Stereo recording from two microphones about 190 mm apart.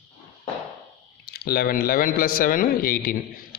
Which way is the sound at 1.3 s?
55° left (ahead or behind).